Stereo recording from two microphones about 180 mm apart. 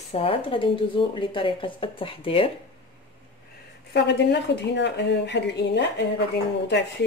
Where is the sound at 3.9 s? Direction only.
70° left (ahead or behind).